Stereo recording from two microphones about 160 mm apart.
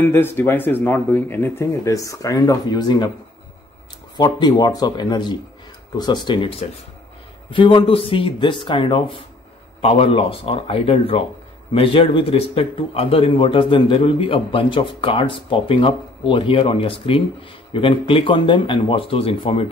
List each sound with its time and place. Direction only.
0.0 s speech: 15° left (ahead or behind)
4.2 s speech: 25° left (ahead or behind)